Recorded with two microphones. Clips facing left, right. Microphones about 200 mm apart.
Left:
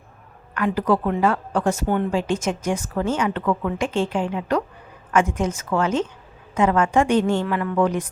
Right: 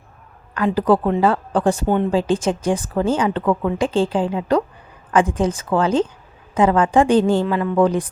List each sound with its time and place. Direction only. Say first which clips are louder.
0.5 s a woman's voice: right 4 dB; 30° right (ahead or behind)